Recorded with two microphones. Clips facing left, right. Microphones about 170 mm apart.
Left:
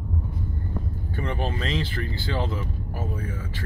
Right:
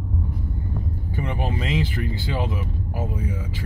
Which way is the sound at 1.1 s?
10° right (ahead or behind).